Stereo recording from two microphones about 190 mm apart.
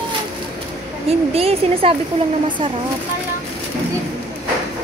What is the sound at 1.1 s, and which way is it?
Speech, 30° right (ahead or behind).